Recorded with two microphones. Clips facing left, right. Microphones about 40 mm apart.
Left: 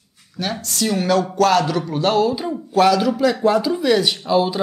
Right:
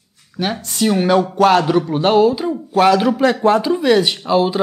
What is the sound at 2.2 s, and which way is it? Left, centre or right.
Speech, centre.